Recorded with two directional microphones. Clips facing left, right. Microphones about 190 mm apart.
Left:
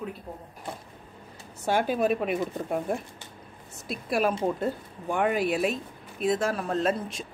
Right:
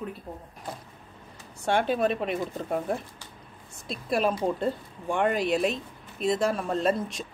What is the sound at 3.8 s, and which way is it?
Speech, 5° left (ahead or behind).